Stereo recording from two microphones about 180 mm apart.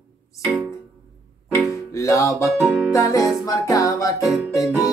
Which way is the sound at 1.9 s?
15° left (ahead or behind).